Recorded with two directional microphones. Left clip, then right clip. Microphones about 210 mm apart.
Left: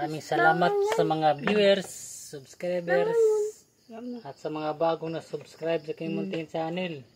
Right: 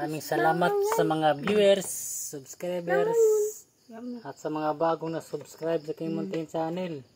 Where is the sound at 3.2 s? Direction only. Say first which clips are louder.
Right 3 dB; 10° left (ahead or behind).